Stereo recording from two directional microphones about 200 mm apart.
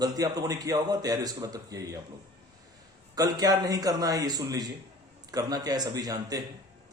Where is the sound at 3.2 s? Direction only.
20° right (ahead or behind).